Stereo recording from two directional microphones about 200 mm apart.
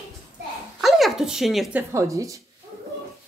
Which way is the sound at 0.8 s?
Centre (ahead or behind).